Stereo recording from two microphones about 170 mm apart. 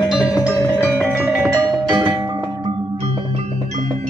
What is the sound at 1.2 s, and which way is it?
Music, 10° right (ahead or behind).